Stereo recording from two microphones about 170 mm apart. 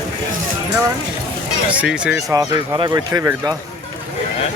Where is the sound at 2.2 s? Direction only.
20° right (ahead or behind).